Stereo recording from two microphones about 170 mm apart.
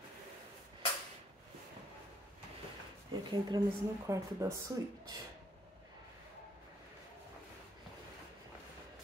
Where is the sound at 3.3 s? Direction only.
25° right (ahead or behind).